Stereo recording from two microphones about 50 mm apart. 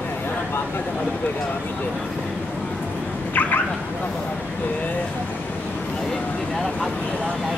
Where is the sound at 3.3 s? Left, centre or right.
Left.